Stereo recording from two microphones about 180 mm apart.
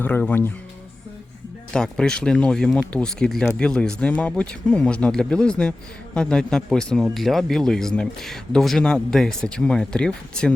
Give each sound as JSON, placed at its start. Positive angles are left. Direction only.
{"t": 0.0, "sound": "speech", "side_deg": 10}
{"t": 1.7, "sound": "speech", "side_deg": 5}